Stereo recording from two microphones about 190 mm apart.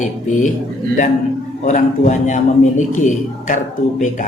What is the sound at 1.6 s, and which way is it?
Speech, 40° left (ahead or behind).